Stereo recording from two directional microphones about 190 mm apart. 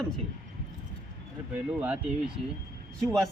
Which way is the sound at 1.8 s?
5° right (ahead or behind).